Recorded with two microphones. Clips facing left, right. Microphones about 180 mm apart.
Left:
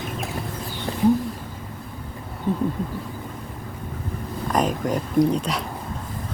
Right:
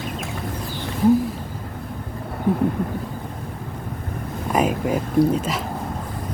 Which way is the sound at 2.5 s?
10° right (ahead or behind).